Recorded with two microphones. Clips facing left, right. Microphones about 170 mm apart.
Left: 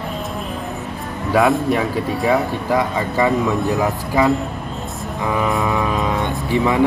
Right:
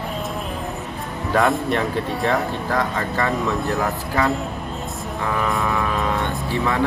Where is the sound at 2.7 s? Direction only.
15° left (ahead or behind).